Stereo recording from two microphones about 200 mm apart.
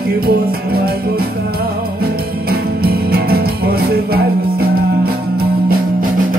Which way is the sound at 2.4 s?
50° right (ahead or behind).